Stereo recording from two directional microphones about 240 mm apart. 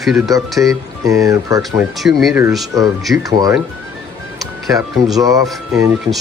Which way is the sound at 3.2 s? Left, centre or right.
Centre.